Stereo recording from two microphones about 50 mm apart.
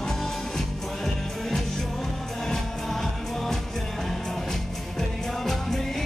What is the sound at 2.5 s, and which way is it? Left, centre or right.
Music, centre.